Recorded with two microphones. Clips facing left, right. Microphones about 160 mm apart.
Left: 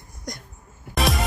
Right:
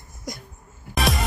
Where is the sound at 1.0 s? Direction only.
Centre (ahead or behind).